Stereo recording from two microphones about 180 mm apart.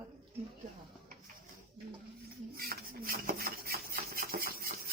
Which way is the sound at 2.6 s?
55° right (ahead or behind).